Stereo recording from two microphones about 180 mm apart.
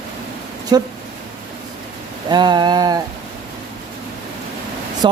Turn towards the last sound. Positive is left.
turn(degrees=-25)  # may be behind; listen again after turning